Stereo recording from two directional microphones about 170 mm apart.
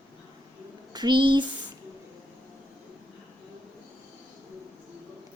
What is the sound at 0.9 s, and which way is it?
Speech, 25° right (ahead or behind).